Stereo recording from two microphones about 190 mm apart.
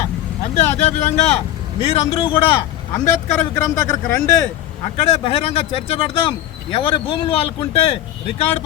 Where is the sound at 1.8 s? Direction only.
30° left (ahead or behind).